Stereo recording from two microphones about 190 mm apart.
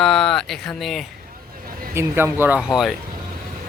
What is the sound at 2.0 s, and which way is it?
Speech, 10° right (ahead or behind).